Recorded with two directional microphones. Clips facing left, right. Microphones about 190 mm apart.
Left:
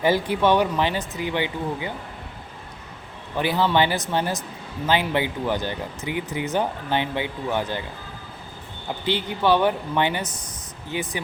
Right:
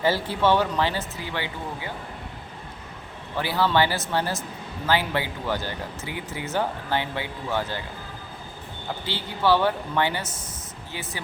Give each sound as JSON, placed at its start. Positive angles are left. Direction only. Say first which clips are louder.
{"t": 0.0, "sound": "speech", "louder": "left 2 dB", "side_deg": 15}
{"t": 3.3, "sound": "speech", "louder": "left 2 dB", "side_deg": 20}
{"t": 9.0, "sound": "speech", "louder": "left 2 dB", "side_deg": 20}